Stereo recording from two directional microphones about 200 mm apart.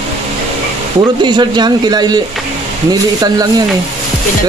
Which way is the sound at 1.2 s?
20° right (ahead or behind).